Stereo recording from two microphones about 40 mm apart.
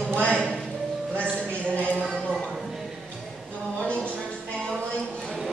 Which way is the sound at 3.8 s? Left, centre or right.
Left.